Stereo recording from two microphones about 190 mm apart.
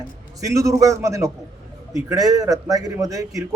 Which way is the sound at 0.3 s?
15° right (ahead or behind).